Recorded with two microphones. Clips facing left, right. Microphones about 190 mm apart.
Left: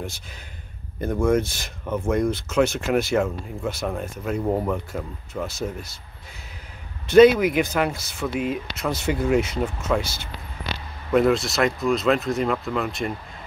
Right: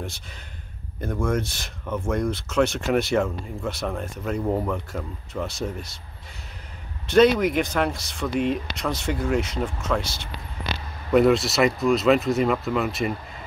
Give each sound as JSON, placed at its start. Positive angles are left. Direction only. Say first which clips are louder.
{"t": 1.2, "sound": "speech", "louder": "left 5 dB", "side_deg": 0}
{"t": 7.1, "sound": "speech", "louder": "left 4 dB", "side_deg": 5}